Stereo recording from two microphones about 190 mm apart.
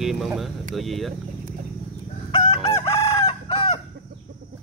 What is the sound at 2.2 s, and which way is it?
Chicken, 30° left (ahead or behind).